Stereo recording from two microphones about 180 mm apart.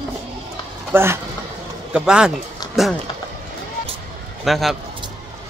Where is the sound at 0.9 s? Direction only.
15° right (ahead or behind).